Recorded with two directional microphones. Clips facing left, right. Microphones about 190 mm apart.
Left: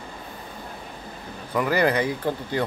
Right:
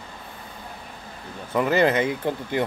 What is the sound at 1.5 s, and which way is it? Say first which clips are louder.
Speech: right 2 dB; 20° right (ahead or behind).